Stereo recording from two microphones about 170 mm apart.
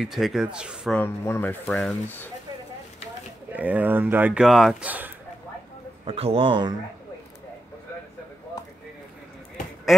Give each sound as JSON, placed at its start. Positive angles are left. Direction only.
{"t": 0.0, "sound": "speech", "side_deg": 0}
{"t": 0.9, "sound": "speech", "side_deg": 15}
{"t": 3.5, "sound": "speech", "side_deg": -10}
{"t": 6.0, "sound": "speech", "side_deg": -35}
{"t": 9.9, "sound": "speech", "side_deg": 0}